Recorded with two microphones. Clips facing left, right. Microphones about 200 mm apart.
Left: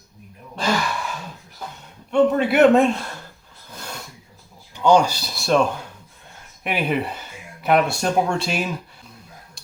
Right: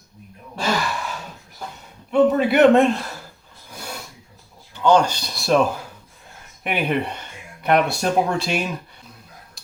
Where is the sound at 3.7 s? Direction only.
10° right (ahead or behind).